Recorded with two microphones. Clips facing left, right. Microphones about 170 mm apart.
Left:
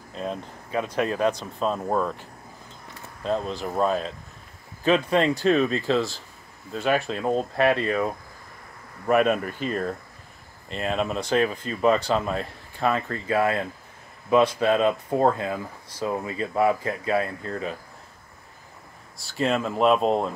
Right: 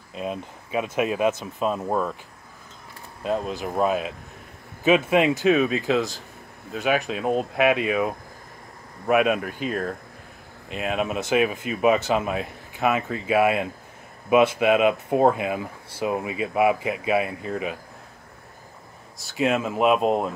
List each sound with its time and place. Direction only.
0.1 s speech: 10° right (ahead or behind)
3.3 s speech: 5° right (ahead or behind)
19.2 s speech: 5° right (ahead or behind)